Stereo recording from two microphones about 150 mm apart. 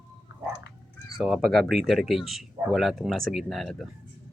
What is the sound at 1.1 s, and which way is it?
Speech, centre (ahead or behind).